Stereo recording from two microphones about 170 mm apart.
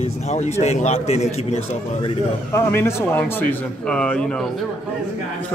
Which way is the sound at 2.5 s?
15° left (ahead or behind).